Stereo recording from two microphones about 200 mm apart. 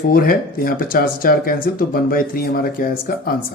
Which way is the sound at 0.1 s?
45° left (ahead or behind).